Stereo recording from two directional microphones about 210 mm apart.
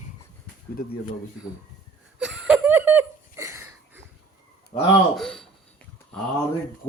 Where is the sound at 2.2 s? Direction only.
5° right (ahead or behind).